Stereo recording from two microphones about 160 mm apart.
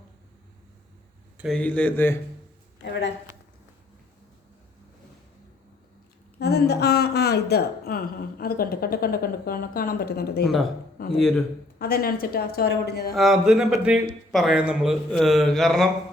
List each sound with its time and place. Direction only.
1.4 s speech: 5° left (ahead or behind)
2.8 s speech: 90° left
6.4 s speech: 90° left; by 10.4 s 75° left (ahead or behind)
11.1 s speech: 5° left (ahead or behind)
11.8 s speech: 70° left (ahead or behind); by 13.1 s 85° left
13.1 s speech: centre (ahead or behind)